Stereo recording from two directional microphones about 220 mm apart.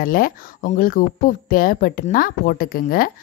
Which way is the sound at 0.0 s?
40° left (ahead or behind).